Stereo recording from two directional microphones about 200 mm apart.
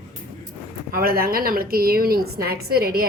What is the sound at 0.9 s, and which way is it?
A woman's voice, 50° right (ahead or behind).